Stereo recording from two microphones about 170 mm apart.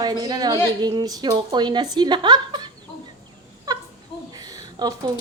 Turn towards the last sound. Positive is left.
turn(degrees=-20)  # may be behind; listen again after turning